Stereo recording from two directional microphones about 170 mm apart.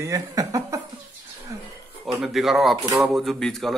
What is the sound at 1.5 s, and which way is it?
Music, 15° right (ahead or behind).